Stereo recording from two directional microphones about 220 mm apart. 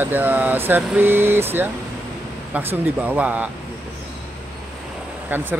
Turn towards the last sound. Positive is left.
turn(degrees=-10)  # may be behind; listen again after turning